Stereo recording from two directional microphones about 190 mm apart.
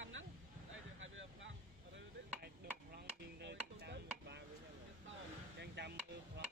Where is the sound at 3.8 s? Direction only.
65° right (ahead or behind).